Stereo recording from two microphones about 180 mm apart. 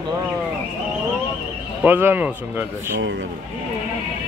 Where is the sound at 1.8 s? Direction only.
10° right (ahead or behind).